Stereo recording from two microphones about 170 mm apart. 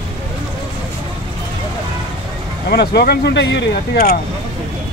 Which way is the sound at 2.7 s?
70° left (ahead or behind).